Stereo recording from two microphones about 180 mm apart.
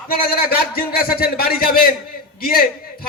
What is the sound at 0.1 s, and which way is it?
A man's voice, 60° left (ahead or behind).